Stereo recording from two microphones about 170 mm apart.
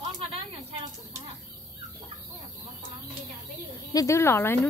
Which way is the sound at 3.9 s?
15° left (ahead or behind).